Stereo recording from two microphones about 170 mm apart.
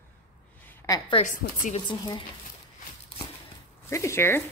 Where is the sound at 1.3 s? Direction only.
50° left (ahead or behind).